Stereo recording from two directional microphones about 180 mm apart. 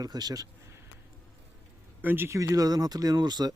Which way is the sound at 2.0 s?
10° right (ahead or behind).